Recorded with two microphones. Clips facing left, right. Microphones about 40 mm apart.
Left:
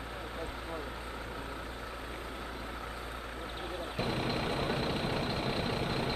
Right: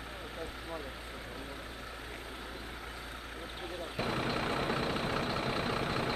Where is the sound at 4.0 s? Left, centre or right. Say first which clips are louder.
Even; centre.